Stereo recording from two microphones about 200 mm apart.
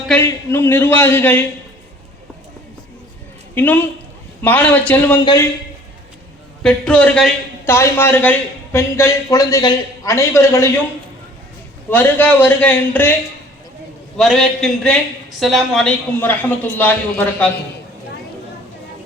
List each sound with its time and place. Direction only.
0.1 s a man's voice: 15° left (ahead or behind)
3.5 s a man's voice: 10° left (ahead or behind)
5.2 s a man's voice: 20° left (ahead or behind)
6.6 s a man's voice: 5° left (ahead or behind)
11.9 s a man's voice: 10° left (ahead or behind)
14.2 s a man's voice: centre (ahead or behind)